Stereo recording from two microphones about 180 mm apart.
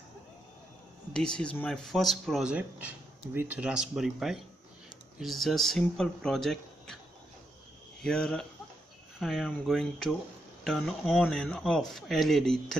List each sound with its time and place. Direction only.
1.1 s speech: 5° left (ahead or behind)
8.0 s speech: 5° left (ahead or behind)